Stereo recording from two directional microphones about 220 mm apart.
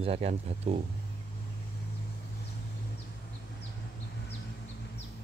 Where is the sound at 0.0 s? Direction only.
25° right (ahead or behind).